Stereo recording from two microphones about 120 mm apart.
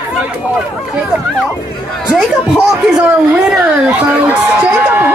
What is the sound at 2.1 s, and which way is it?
Speech, 5° right (ahead or behind).